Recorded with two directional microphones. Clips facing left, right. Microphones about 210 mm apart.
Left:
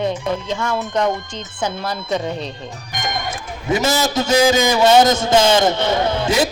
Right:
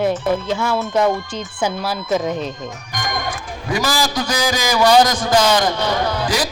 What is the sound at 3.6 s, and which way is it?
A man's voice, 25° left (ahead or behind).